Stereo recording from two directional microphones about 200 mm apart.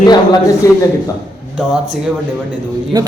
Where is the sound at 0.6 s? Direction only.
15° left (ahead or behind).